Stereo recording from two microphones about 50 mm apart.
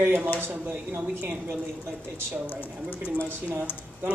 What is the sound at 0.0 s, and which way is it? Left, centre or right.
A woman's voice, right.